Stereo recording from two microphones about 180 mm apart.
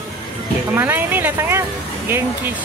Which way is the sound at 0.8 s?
10° right (ahead or behind).